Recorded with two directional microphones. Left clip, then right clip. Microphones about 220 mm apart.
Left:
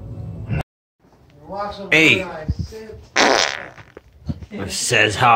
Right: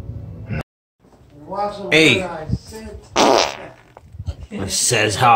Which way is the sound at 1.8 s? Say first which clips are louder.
Even; centre (ahead or behind).